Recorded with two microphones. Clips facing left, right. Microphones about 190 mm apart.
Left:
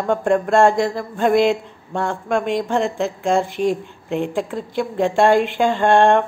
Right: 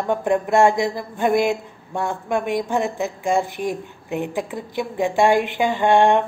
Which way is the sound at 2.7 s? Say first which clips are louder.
Left 2 dB; 5° right (ahead or behind).